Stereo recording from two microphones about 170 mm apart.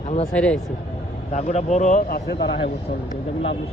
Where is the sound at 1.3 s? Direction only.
45° left (ahead or behind); by 2.7 s 75° left (ahead or behind).